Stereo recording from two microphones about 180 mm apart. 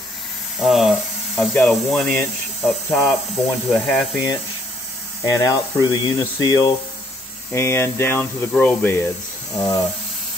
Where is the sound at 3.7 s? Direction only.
5° left (ahead or behind).